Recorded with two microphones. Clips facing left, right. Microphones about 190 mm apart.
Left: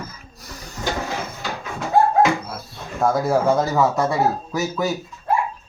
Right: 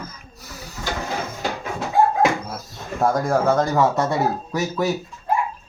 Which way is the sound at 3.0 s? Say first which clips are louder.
Left 1 dB; 5° left (ahead or behind).